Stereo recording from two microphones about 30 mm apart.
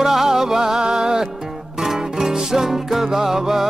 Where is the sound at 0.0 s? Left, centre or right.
Centre.